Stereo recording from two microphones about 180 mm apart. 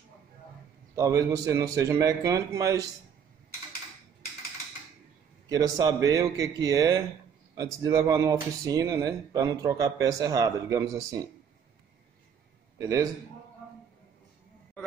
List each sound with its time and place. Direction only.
0.9 s speech: 20° right (ahead or behind)
5.5 s speech: 20° right (ahead or behind)
12.7 s a man's voice: 20° right (ahead or behind)